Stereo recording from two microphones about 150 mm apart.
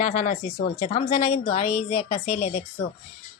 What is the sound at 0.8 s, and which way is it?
A woman's voice, 45° left (ahead or behind).